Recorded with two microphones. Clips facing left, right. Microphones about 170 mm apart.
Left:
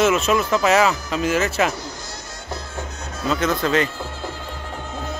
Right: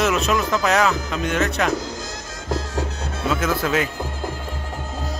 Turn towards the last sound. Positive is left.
turn(degrees=-5)  # may be behind; listen again after turning